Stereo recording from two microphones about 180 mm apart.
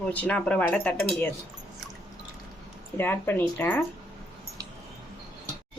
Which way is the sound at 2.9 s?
10° left (ahead or behind).